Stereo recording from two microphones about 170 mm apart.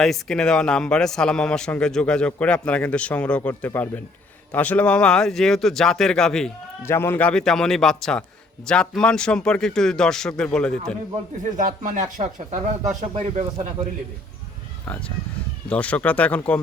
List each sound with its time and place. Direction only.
0.0 s a man's voice: 5° left (ahead or behind)
6.8 s a man's voice: 15° left (ahead or behind)
11.5 s speech: 50° right (ahead or behind)
15.7 s speech: 5° left (ahead or behind)